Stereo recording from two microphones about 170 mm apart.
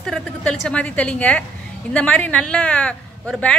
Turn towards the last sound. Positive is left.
turn(degrees=5)  # may be behind; listen again after turning